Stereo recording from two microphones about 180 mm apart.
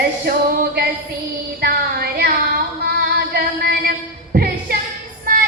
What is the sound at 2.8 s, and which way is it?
Music, 60° right (ahead or behind).